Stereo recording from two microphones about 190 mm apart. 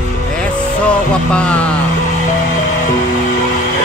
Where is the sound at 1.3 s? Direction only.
5° left (ahead or behind).